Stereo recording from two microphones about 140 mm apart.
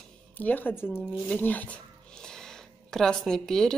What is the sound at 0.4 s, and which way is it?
Speech, 10° left (ahead or behind).